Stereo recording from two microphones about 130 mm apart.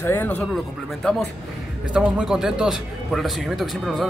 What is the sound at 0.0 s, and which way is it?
Speech, 15° left (ahead or behind).